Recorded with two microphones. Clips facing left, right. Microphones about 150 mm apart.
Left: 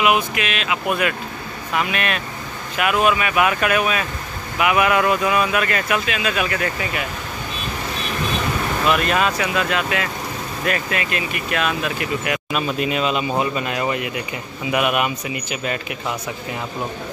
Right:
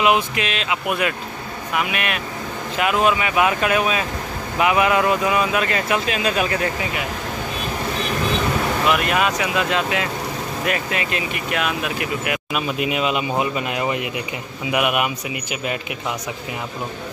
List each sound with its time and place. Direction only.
0.0 s speech: 30° right (ahead or behind); by 2.2 s 10° right (ahead or behind)
2.8 s speech: 20° right (ahead or behind)
6.0 s speech: 35° right (ahead or behind)
8.9 s speech: 10° right (ahead or behind)